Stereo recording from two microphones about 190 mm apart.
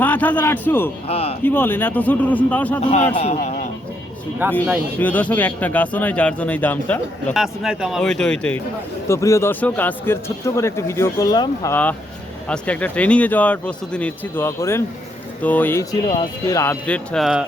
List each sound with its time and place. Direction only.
0.0 s speech: 10° left (ahead or behind)
1.0 s speech: 30° left (ahead or behind)
1.5 s speech: 10° left (ahead or behind)
2.8 s speech: 35° left (ahead or behind)
4.4 s speech: 10° right (ahead or behind)
4.9 s speech: 10° left (ahead or behind)
16.0 s speech: 25° left (ahead or behind)
16.6 s speech: 10° left (ahead or behind)